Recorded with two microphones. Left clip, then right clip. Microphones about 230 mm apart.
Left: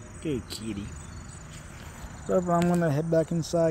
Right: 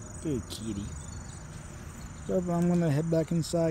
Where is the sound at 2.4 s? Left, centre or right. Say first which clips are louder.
Left 5 dB; centre.